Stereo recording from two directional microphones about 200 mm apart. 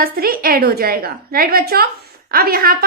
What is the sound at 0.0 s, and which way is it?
A woman's voice, 45° right (ahead or behind).